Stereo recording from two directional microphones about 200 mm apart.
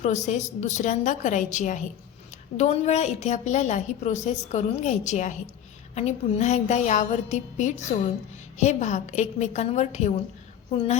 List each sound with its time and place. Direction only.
0.0 s a woman's voice: 35° left (ahead or behind)